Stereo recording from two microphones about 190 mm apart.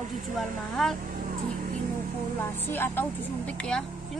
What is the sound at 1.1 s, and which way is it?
Vehicle, 45° right (ahead or behind).